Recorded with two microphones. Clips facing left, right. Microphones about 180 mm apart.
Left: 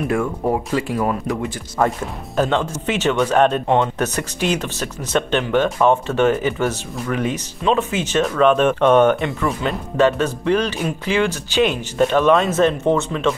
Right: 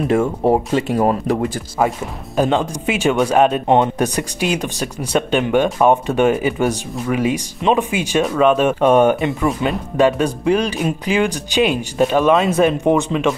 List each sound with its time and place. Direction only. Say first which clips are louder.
0.1 s speech: right 6 dB; 30° right (ahead or behind)
1.8 s speech: even; 10° right (ahead or behind)